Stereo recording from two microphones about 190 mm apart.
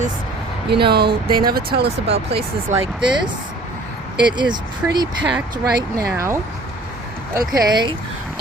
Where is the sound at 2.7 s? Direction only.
10° right (ahead or behind).